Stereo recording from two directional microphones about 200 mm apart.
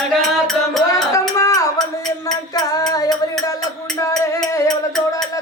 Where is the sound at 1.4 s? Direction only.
15° left (ahead or behind).